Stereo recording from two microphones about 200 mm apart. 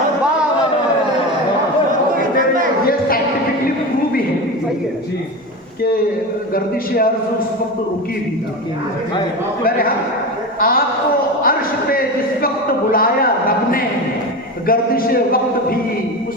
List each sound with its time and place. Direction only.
2.8 s a sound: 50° left (ahead or behind)
6.5 s a man's voice: 45° left (ahead or behind)
10.6 s a man's voice: 45° left (ahead or behind)